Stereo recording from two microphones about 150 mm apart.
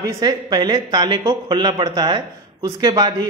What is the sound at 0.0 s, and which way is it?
Speech, 25° right (ahead or behind).